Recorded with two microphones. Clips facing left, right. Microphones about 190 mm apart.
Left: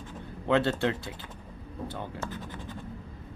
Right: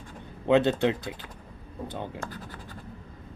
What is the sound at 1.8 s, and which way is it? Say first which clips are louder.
Speech: right 2 dB; 20° right (ahead or behind).